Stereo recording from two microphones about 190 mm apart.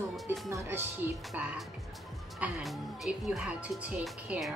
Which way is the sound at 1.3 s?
Centre (ahead or behind).